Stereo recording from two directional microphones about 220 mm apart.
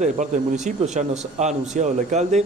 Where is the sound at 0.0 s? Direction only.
35° right (ahead or behind).